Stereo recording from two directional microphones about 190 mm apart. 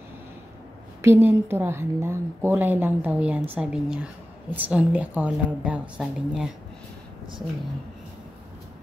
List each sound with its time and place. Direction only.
1.0 s a woman's voice: 15° right (ahead or behind)